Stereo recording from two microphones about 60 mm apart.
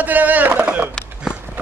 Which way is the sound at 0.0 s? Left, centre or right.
Right.